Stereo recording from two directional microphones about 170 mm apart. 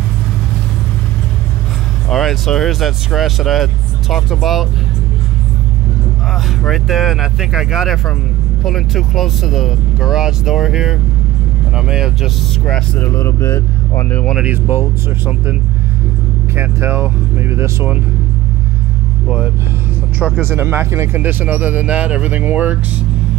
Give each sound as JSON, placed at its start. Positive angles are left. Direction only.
{"t": 2.0, "sound": "speech", "side_deg": 0}
{"t": 6.6, "sound": "speech", "side_deg": 0}
{"t": 14.3, "sound": "speech", "side_deg": -10}
{"t": 16.5, "sound": "speech", "side_deg": -15}
{"t": 19.2, "sound": "speech", "side_deg": -5}